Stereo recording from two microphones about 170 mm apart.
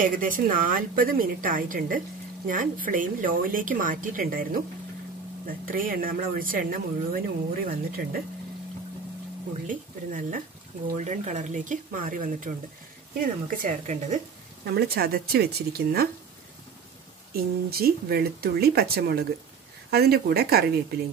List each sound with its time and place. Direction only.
0.0 s a woman's voice: 55° right (ahead or behind)
9.7 s a woman's voice: 50° right (ahead or behind)
14.8 s speech: 65° right (ahead or behind)
17.3 s speech: 60° right (ahead or behind)